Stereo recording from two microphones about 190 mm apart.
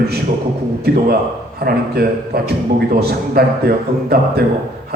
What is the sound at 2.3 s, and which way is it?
A man's voice, 55° right (ahead or behind).